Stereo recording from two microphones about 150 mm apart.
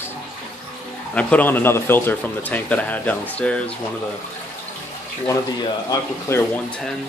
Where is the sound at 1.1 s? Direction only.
10° left (ahead or behind).